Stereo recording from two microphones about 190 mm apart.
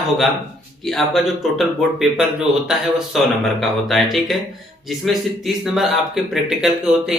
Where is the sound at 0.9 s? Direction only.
Centre (ahead or behind).